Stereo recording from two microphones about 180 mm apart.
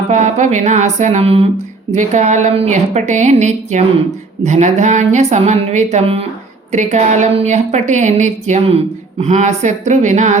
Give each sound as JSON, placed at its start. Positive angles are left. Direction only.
{"t": 0.1, "sound": "a woman's voice", "side_deg": -40}